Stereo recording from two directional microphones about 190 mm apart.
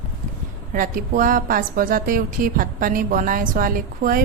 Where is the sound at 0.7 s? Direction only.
45° right (ahead or behind).